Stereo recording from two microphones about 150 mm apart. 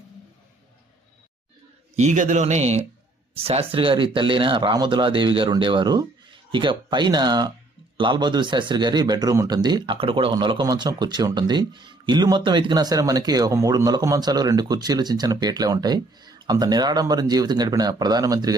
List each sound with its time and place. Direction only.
2.0 s a man's voice: 55° right (ahead or behind); by 18.5 s 25° right (ahead or behind)